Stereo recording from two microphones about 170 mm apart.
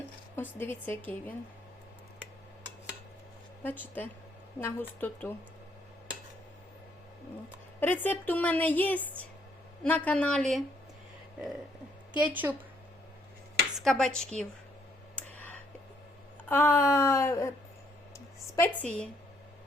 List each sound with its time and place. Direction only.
0.6 s a woman's voice: 10° left (ahead or behind)
3.6 s a woman's voice: 10° left (ahead or behind)
7.8 s a woman's voice: 10° left (ahead or behind)
12.1 s a woman's voice: 10° right (ahead or behind)
13.7 s speech: centre (ahead or behind)
15.1 s clicking: 10° left (ahead or behind)
16.5 s a woman's voice: 15° left (ahead or behind)
18.5 s a woman's voice: 10° left (ahead or behind)